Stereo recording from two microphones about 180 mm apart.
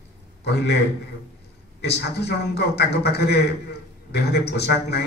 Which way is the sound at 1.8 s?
65° left (ahead or behind).